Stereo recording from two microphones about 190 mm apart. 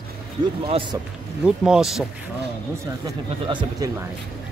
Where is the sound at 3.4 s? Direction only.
25° right (ahead or behind).